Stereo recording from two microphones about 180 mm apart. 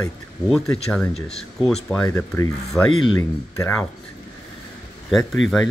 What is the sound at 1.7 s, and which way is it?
Speech, 5° left (ahead or behind).